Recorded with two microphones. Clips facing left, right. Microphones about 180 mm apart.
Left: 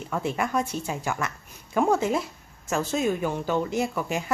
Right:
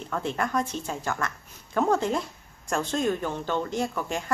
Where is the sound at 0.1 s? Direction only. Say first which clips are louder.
Left 1 dB; 10° left (ahead or behind).